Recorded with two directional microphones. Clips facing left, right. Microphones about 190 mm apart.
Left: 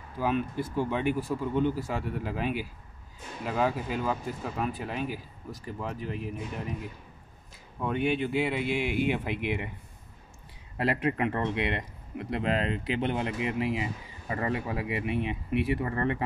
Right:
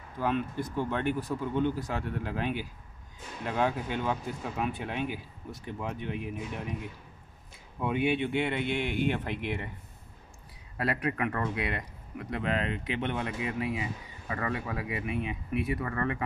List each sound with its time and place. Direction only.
0.2 s speech: 5° left (ahead or behind)
10.8 s a man's voice: 25° left (ahead or behind)